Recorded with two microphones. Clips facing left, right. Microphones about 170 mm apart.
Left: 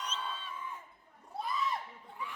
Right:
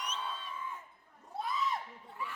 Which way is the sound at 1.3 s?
Centre (ahead or behind).